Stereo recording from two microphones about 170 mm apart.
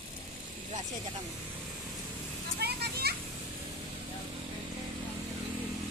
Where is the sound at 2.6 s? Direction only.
70° right (ahead or behind).